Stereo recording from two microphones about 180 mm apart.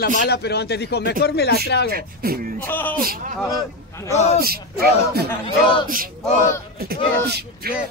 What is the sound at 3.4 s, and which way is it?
Speech, 20° left (ahead or behind).